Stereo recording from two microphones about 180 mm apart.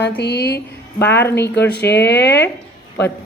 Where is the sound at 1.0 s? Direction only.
10° left (ahead or behind).